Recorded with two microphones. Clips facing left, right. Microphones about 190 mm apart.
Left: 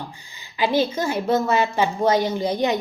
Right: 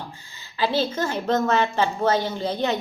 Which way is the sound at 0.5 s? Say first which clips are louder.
Left 3 dB; 15° left (ahead or behind).